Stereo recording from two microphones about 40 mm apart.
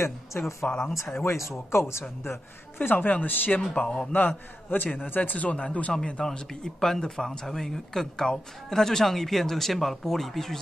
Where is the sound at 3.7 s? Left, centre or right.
Left.